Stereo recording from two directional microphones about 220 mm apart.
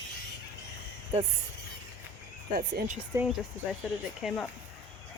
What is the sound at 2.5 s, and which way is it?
Speech, 40° right (ahead or behind).